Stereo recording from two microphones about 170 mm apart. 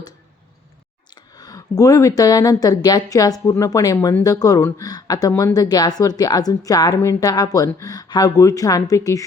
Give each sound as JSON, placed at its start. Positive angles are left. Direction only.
{"t": 1.1, "sound": "speech", "side_deg": 20}